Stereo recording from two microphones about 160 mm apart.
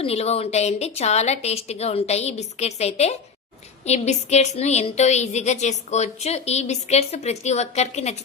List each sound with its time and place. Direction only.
0.0 s a woman's voice: 40° left (ahead or behind)